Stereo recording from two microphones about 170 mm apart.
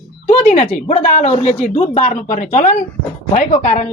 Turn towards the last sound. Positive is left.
turn(degrees=45)  # may be behind; listen again after turning